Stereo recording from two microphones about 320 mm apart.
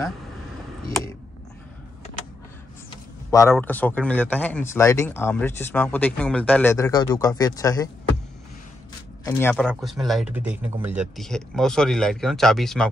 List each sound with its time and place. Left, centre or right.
3.3 s a man's voice: centre
9.2 s a man's voice: centre